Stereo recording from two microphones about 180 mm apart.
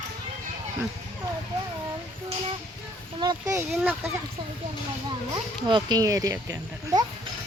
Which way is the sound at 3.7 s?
5° right (ahead or behind).